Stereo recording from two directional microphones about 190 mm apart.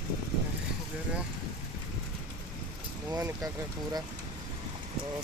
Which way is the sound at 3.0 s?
15° right (ahead or behind).